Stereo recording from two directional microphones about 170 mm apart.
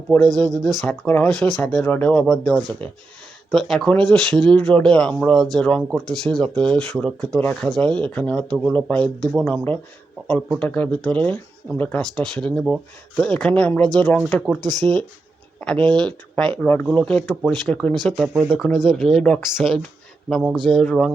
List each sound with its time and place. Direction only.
0.3 s speech: 5° left (ahead or behind)
14.6 s speech: 25° right (ahead or behind)
15.6 s speech: 5° left (ahead or behind)